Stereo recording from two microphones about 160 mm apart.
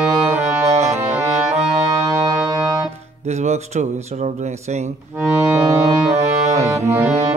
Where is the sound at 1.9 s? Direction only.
20° right (ahead or behind).